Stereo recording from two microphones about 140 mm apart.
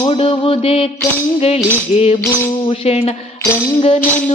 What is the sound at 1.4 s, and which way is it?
Music, 45° left (ahead or behind).